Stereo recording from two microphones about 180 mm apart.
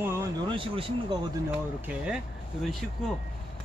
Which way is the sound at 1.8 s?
5° right (ahead or behind).